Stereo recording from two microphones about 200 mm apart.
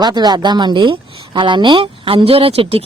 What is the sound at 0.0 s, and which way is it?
Speech, 20° right (ahead or behind).